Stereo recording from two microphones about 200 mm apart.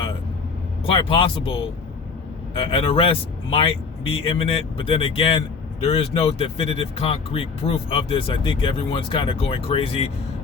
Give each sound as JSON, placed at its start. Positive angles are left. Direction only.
{"t": 0.9, "sound": "speech", "side_deg": 25}
{"t": 2.6, "sound": "speech", "side_deg": 25}